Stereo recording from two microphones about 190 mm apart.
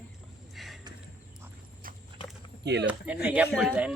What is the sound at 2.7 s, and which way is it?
Speech, 65° right (ahead or behind).